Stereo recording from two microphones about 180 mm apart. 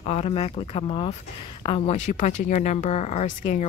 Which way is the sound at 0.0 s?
35° left (ahead or behind).